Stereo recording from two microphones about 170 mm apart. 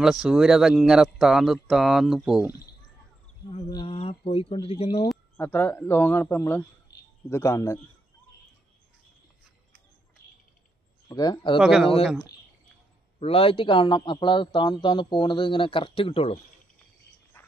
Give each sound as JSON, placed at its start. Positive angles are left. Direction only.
{"t": 0.0, "sound": "speech", "side_deg": 0}
{"t": 3.4, "sound": "speech", "side_deg": 35}
{"t": 5.4, "sound": "a man's voice", "side_deg": 10}
{"t": 6.9, "sound": "a sound", "side_deg": 70}
{"t": 7.2, "sound": "a man's voice", "side_deg": 15}
{"t": 11.1, "sound": "a man's voice", "side_deg": 25}
{"t": 11.6, "sound": "speech", "side_deg": -5}
{"t": 13.2, "sound": "a man's voice", "side_deg": 35}
{"t": 17.4, "sound": "a sound", "side_deg": 15}